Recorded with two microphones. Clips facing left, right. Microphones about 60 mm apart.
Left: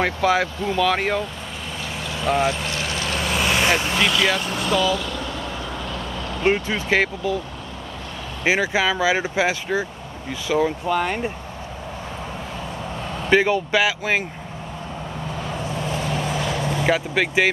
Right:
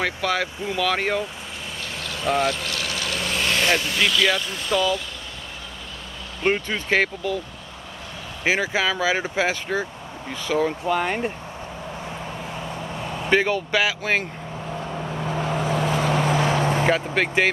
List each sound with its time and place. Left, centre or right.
0.0 s speech: centre
0.6 s speech: centre
2.4 s vehicle: left
3.3 s vehicle: centre
4.1 s speech: centre
4.6 s speech: left
6.4 s speech: centre
8.5 s speech: centre
10.9 s speech: centre
13.3 s speech: centre
15.6 s vehicle: right
16.2 s vehicle: right
16.8 s speech: centre